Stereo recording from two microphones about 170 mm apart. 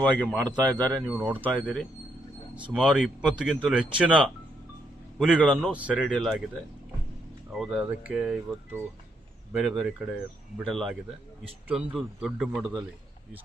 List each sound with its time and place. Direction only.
0.0 s speech: 5° left (ahead or behind)
1.0 s speech: 10° right (ahead or behind)
2.7 s speech: 5° right (ahead or behind)
5.4 s speech: 5° left (ahead or behind)
5.7 s speech: 10° right (ahead or behind)
6.1 s speech: 5° left (ahead or behind)
7.6 s speech: 5° right (ahead or behind)